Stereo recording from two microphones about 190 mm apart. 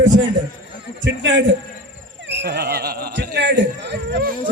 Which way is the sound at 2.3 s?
60° right (ahead or behind).